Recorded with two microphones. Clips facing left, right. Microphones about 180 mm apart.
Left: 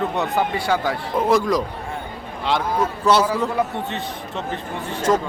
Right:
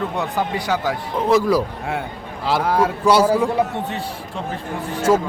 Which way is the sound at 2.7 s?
65° right (ahead or behind).